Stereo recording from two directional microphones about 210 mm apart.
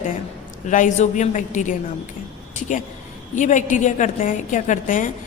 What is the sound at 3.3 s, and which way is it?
A woman's voice, 35° left (ahead or behind).